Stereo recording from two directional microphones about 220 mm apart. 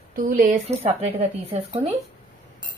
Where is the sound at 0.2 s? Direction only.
40° right (ahead or behind).